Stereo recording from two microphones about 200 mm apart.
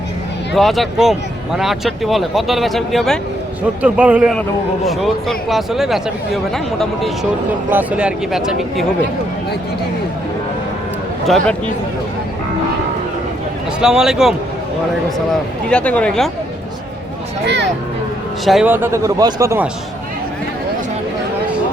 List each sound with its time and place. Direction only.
0.5 s speech: centre (ahead or behind)
11.3 s speech: centre (ahead or behind)
13.8 s speech: 5° right (ahead or behind)
15.7 s speech: 5° left (ahead or behind)
17.4 s speech: 60° right (ahead or behind)
18.4 s speech: 5° right (ahead or behind)